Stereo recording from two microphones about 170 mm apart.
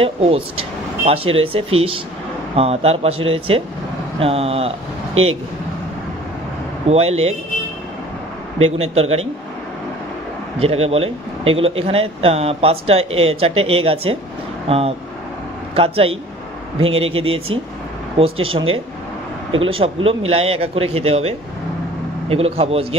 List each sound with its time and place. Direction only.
0.0 s speech: 35° right (ahead or behind)
6.9 s speech: 40° right (ahead or behind)
8.5 s speech: 35° right (ahead or behind)
10.6 s speech: 35° right (ahead or behind)